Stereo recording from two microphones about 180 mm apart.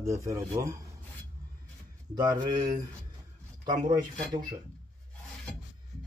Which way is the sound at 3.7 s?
20° right (ahead or behind).